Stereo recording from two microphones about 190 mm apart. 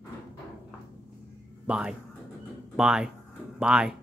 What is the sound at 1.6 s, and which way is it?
Speech, 5° right (ahead or behind).